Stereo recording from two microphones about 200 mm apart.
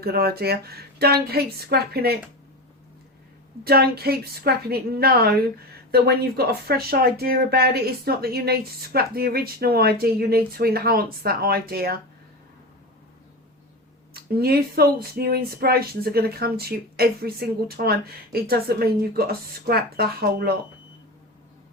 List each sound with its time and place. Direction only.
0.0 s speech: 50° right (ahead or behind)
3.6 s speech: 50° right (ahead or behind)
14.1 s speech: 50° right (ahead or behind)